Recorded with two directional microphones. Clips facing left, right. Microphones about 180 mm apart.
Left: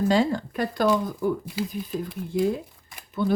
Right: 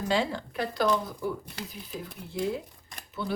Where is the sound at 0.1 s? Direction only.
45° left (ahead or behind).